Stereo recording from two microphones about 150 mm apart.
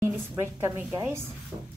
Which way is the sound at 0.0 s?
15° right (ahead or behind).